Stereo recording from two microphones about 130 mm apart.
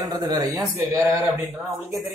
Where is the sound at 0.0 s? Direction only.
30° right (ahead or behind).